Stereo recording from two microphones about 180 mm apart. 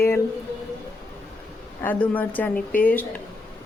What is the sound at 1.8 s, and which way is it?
A woman's voice, 10° left (ahead or behind).